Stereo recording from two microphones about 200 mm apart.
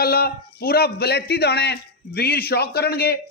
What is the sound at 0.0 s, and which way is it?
Speech, 50° left (ahead or behind).